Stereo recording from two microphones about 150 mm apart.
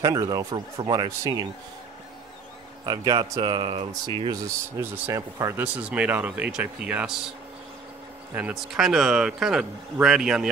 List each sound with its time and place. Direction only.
0.0 s speech: 25° right (ahead or behind)
2.8 s speech: 25° right (ahead or behind); by 7.2 s 5° right (ahead or behind)
8.4 s speech: 5° right (ahead or behind)